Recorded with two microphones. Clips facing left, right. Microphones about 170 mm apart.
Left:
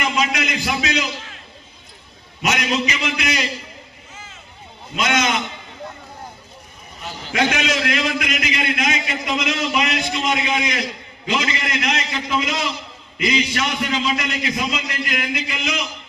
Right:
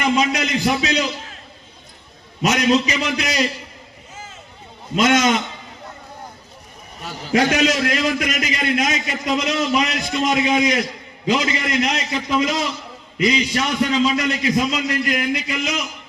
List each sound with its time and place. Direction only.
0.0 s a sound: 35° right (ahead or behind)
2.4 s a man's voice: 35° right (ahead or behind)
4.9 s a man's voice: 45° right (ahead or behind)
7.3 s a man's voice: 40° right (ahead or behind)
13.1 s a man's voice: 35° right (ahead or behind)